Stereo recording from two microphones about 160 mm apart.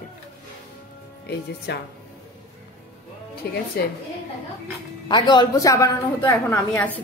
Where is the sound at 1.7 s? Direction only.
90° left.